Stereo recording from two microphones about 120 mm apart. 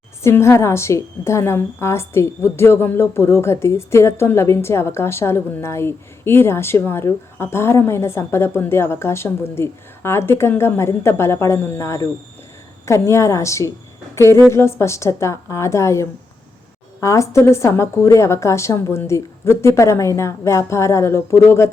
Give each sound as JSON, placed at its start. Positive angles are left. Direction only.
{"t": 0.2, "sound": "a woman's voice", "side_deg": 20}